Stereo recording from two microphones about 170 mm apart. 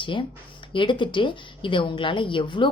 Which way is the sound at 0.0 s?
30° left (ahead or behind).